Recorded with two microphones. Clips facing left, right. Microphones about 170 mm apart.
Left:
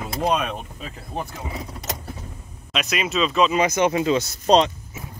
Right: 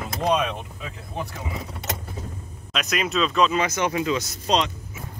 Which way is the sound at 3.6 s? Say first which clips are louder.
Left 4 dB; 20° left (ahead or behind).